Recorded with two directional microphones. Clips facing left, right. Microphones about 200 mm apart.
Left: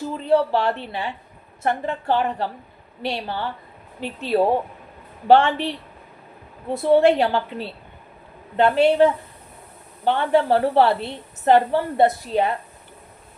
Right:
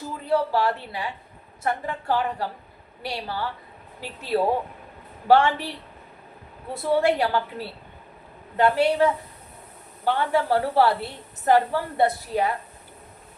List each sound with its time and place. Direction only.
0.3 s a woman's voice: 25° left (ahead or behind)
6.9 s a woman's voice: 25° left (ahead or behind)